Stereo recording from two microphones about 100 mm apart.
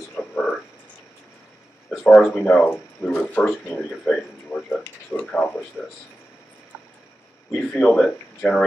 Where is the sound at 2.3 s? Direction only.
10° left (ahead or behind).